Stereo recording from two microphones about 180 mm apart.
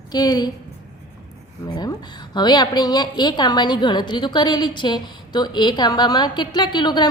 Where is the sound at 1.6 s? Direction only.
25° left (ahead or behind).